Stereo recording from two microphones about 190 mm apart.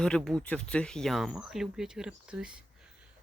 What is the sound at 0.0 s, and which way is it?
Speech, 5° left (ahead or behind).